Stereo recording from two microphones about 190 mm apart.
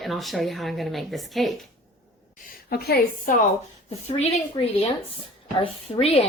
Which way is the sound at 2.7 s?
50° left (ahead or behind).